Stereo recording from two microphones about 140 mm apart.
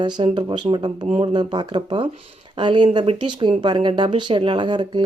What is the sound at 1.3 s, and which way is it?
Speech, 35° right (ahead or behind).